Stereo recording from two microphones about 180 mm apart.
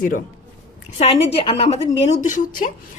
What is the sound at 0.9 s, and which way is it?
A woman's voice, 35° left (ahead or behind).